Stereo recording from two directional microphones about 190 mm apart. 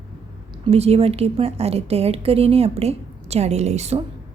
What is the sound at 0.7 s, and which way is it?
A woman's voice, 30° right (ahead or behind).